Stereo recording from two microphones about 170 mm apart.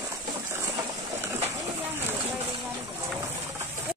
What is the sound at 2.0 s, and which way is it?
Vehicle, 10° right (ahead or behind).